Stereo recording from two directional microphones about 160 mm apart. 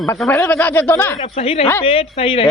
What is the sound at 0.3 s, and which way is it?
Speech, 15° left (ahead or behind).